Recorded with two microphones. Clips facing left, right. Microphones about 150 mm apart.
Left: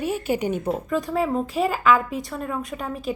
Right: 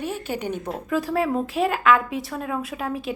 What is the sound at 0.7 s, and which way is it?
A woman's voice, centre (ahead or behind).